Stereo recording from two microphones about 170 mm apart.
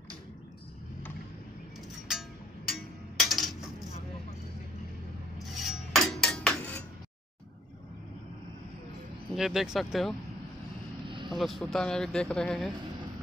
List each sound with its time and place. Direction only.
2.1 s music: 5° right (ahead or behind)
5.6 s a sound: centre (ahead or behind)
9.3 s speech: centre (ahead or behind)
11.1 s vehicle: 30° right (ahead or behind)
11.3 s speech: centre (ahead or behind)